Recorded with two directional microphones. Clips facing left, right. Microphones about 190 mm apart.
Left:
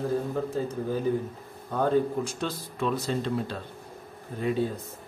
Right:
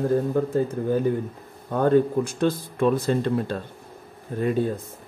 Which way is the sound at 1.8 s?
55° right (ahead or behind).